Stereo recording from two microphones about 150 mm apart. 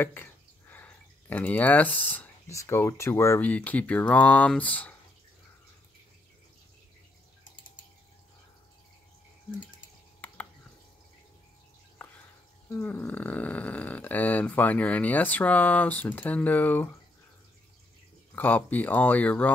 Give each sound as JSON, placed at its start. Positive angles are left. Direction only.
{"t": 0.0, "sound": "speech", "side_deg": 15}
{"t": 10.2, "sound": "drip", "side_deg": 10}
{"t": 12.6, "sound": "speech", "side_deg": 15}
{"t": 18.3, "sound": "speech", "side_deg": 10}